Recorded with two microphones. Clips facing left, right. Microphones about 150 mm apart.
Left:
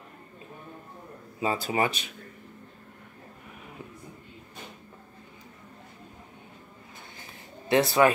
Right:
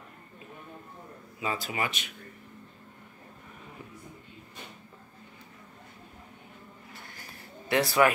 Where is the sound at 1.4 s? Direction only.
30° left (ahead or behind).